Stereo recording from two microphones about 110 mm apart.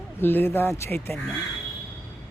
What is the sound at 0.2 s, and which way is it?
Speech, 20° left (ahead or behind).